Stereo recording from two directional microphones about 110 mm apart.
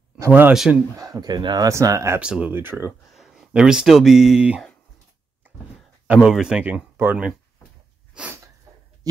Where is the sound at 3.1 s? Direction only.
5° right (ahead or behind).